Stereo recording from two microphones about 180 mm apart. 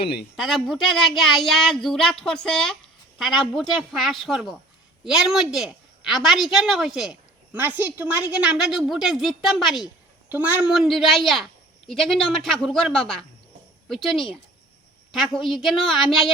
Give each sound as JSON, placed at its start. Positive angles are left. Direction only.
{"t": 0.0, "sound": "speech", "side_deg": 65}
{"t": 0.3, "sound": "a woman's voice", "side_deg": 0}